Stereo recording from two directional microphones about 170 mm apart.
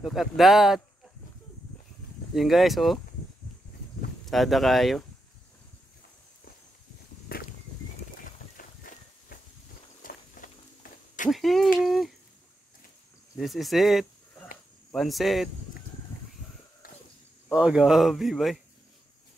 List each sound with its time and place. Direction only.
0.0 s speech: centre (ahead or behind)
2.3 s speech: centre (ahead or behind)
4.3 s speech: centre (ahead or behind)
8.2 s a sound: 50° left (ahead or behind)
10.0 s walk: 55° left (ahead or behind)
11.2 s speech: centre (ahead or behind)
13.4 s speech: centre (ahead or behind)
17.5 s speech: 5° right (ahead or behind)